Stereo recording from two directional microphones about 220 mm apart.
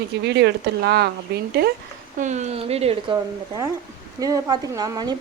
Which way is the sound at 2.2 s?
30° right (ahead or behind).